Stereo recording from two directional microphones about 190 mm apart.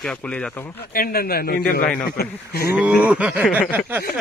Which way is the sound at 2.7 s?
10° right (ahead or behind).